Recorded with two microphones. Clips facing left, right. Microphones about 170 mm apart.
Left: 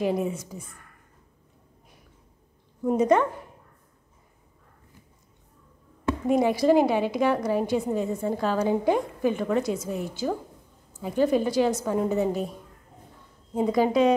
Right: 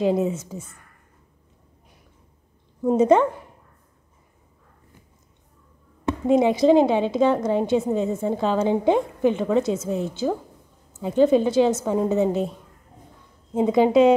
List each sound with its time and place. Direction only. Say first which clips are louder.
0.0 s a woman's voice: right 5 dB; 25° right (ahead or behind)
2.8 s a woman's voice: right 4 dB; 25° right (ahead or behind)
6.2 s a woman's voice: right 4 dB; 20° right (ahead or behind)